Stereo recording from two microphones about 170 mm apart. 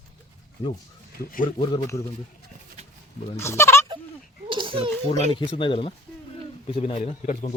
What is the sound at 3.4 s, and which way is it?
Speech, 15° left (ahead or behind).